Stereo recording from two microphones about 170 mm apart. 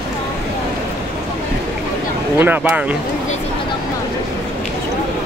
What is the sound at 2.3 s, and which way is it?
Speech, 10° right (ahead or behind).